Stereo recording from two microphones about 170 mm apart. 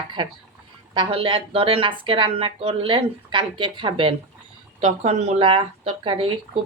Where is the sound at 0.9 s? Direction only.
30° right (ahead or behind).